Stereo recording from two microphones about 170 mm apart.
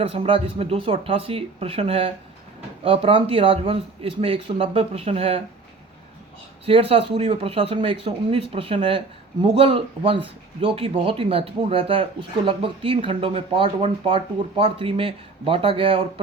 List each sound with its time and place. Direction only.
0.0 s speech: 35° right (ahead or behind)
6.7 s speech: 30° right (ahead or behind)